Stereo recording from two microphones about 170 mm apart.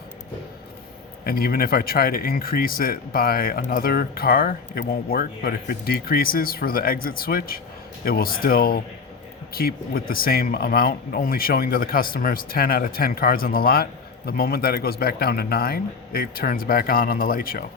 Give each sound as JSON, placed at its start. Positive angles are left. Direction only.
{"t": 1.2, "sound": "speech", "side_deg": 60}